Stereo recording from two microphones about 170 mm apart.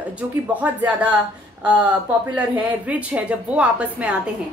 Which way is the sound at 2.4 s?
10° right (ahead or behind).